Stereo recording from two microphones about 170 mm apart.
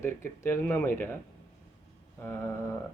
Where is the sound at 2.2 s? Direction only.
15° left (ahead or behind).